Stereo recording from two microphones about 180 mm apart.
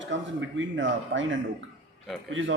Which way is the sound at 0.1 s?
90° right.